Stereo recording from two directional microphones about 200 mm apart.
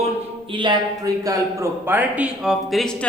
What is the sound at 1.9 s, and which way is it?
Speech, 10° right (ahead or behind).